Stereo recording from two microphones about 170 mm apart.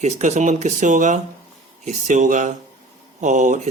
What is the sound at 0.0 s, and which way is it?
A man's voice, 45° right (ahead or behind).